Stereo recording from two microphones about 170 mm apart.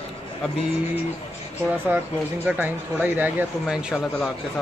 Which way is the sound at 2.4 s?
10° right (ahead or behind).